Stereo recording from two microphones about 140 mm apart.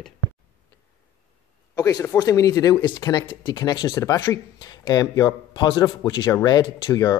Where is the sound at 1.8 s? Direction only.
25° left (ahead or behind).